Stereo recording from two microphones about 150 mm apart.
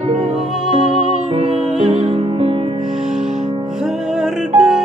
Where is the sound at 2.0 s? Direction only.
40° right (ahead or behind).